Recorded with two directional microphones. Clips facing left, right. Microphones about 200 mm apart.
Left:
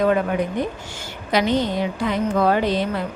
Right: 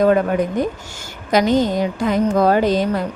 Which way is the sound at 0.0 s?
45° right (ahead or behind).